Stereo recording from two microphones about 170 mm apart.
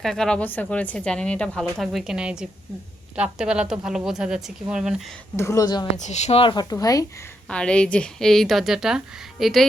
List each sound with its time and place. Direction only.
0.0 s speech: centre (ahead or behind)
5.4 s a woman's voice: 20° left (ahead or behind)
6.0 s a woman's voice: 40° left (ahead or behind); by 7.0 s 20° left (ahead or behind)
7.4 s speech: 5° left (ahead or behind)